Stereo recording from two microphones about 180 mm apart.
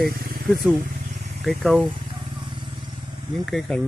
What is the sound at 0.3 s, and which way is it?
Vehicle, 55° right (ahead or behind).